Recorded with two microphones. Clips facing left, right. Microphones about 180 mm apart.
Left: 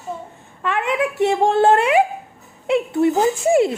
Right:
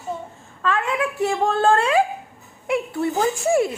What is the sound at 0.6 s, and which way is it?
A woman's voice, 20° left (ahead or behind).